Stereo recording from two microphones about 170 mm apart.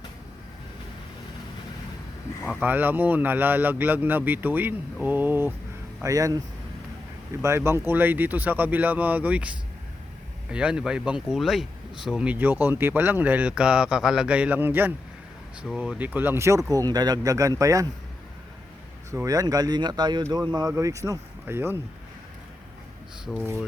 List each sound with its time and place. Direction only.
2.5 s speech: 10° right (ahead or behind)
5.0 s a sound: 10° right (ahead or behind)
6.0 s speech: 20° right (ahead or behind)
7.4 s speech: 15° right (ahead or behind)
19.1 s speech: 20° right (ahead or behind)
23.2 s speech: 5° right (ahead or behind)